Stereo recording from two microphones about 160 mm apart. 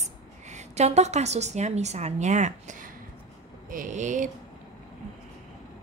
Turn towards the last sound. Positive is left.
turn(degrees=-50)  # may be behind; listen again after turning